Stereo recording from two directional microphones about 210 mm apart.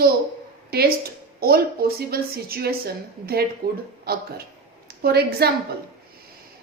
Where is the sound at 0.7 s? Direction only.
45° right (ahead or behind).